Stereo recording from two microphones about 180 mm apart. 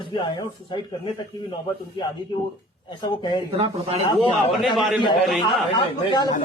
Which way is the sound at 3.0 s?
25° left (ahead or behind).